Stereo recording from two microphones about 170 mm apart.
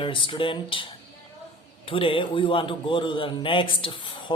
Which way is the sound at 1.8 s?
30° left (ahead or behind).